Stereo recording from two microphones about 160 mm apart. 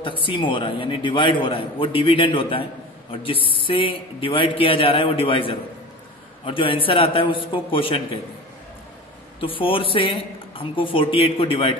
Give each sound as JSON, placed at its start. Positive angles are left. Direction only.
{"t": 0.0, "sound": "a man's voice", "side_deg": 35}
{"t": 9.4, "sound": "a man's voice", "side_deg": 35}